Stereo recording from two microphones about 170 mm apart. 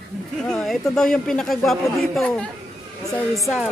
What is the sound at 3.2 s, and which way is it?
Speech, 20° left (ahead or behind).